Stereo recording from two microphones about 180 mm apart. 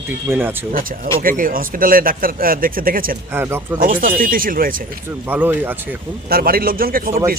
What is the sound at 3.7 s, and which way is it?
Speech, 50° right (ahead or behind).